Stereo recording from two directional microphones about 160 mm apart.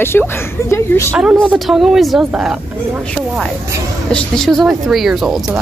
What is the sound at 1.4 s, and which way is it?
Speech, centre (ahead or behind).